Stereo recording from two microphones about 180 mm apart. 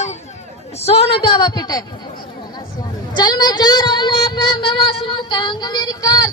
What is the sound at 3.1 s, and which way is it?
Child singing, 25° left (ahead or behind).